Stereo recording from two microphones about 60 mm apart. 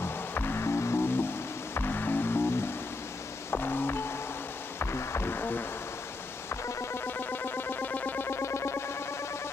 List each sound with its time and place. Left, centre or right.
0.0 s music: left